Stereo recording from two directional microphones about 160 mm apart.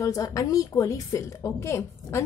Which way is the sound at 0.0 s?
20° left (ahead or behind).